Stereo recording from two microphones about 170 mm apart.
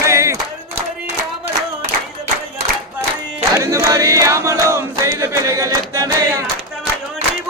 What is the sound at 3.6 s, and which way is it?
Chant, 15° right (ahead or behind).